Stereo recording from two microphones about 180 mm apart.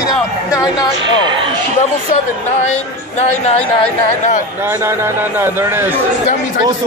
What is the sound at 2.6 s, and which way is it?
Speech, 40° left (ahead or behind).